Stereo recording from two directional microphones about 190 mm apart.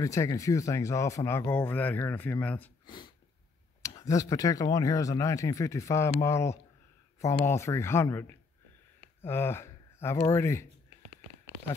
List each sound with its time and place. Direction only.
0.0 s speech: 15° left (ahead or behind)
3.8 s speech: 15° left (ahead or behind)